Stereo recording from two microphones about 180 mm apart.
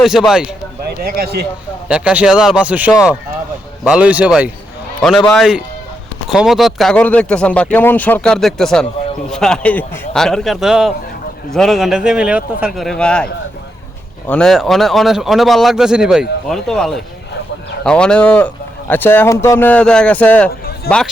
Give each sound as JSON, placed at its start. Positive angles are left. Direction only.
{"t": 0.0, "sound": "speech", "side_deg": 0}
{"t": 1.0, "sound": "speech", "side_deg": -55}
{"t": 1.9, "sound": "speech", "side_deg": -5}
{"t": 14.3, "sound": "speech", "side_deg": 5}
{"t": 20.9, "sound": "a man's voice", "side_deg": 60}